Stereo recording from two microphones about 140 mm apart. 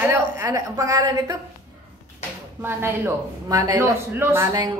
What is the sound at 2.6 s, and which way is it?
Speech, 15° right (ahead or behind).